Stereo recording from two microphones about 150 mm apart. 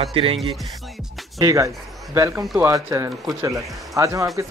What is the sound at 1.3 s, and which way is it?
Speech, 20° right (ahead or behind).